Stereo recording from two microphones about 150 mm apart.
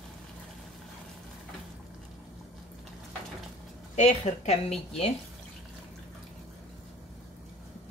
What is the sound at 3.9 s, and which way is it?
Speech, 50° left (ahead or behind).